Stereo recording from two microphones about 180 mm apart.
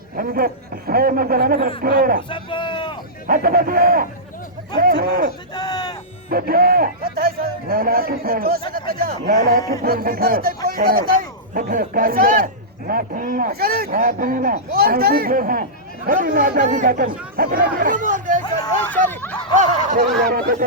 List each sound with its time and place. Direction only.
0.2 s speech: 55° right (ahead or behind)
2.3 s a sound: 30° left (ahead or behind)
3.2 s speech: 55° right (ahead or behind)
5.5 s a sound: 25° left (ahead or behind)
6.3 s speech: 55° right (ahead or behind)
18.8 s speech: 10° left (ahead or behind)
19.5 s speech: 50° right (ahead or behind)